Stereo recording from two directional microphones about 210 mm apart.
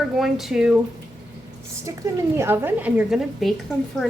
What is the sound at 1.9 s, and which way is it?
A woman's voice, 15° right (ahead or behind).